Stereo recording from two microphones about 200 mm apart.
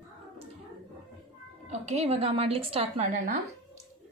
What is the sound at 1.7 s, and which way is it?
A woman's voice, 30° right (ahead or behind).